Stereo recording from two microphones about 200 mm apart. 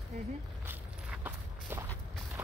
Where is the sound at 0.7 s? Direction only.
10° right (ahead or behind).